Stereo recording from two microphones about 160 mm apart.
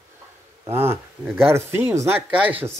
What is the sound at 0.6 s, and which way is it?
Speech, 15° right (ahead or behind).